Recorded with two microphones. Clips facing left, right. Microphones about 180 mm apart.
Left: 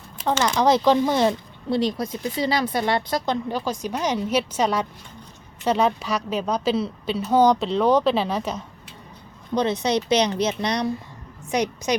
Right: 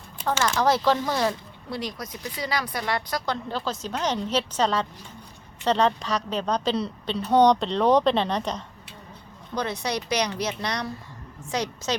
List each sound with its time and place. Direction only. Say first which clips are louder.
0.4 s speech: left 4 dB; 20° left (ahead or behind)
3.5 s a woman's voice: left 3 dB; 15° left (ahead or behind)
9.6 s speech: left 6 dB; 20° left (ahead or behind)